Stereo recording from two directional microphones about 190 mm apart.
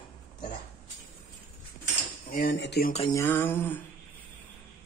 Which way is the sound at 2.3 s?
50° left (ahead or behind).